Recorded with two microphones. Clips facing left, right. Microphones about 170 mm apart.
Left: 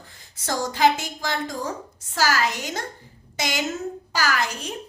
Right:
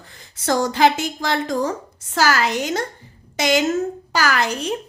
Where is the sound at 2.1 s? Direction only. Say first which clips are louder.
Right 4 dB; 75° right (ahead or behind).